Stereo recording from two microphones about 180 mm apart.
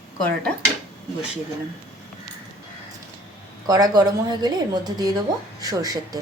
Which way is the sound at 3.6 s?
20° right (ahead or behind).